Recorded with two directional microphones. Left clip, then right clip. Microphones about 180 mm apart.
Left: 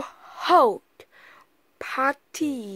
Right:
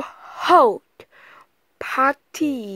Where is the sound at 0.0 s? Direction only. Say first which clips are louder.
Right 5 dB; 20° right (ahead or behind).